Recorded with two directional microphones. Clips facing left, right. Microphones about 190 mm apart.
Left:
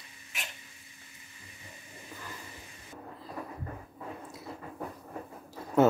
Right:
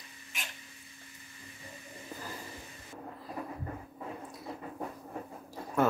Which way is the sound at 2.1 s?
40° right (ahead or behind).